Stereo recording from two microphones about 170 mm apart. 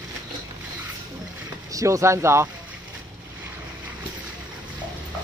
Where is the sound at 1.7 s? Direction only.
20° right (ahead or behind).